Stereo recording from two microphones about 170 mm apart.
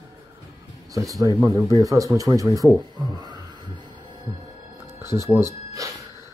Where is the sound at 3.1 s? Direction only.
25° right (ahead or behind).